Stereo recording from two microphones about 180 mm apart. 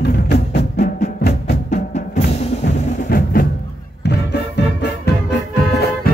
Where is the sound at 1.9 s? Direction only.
40° left (ahead or behind).